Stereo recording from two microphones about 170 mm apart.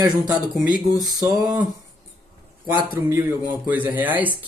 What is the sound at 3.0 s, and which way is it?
Speech, 15° right (ahead or behind).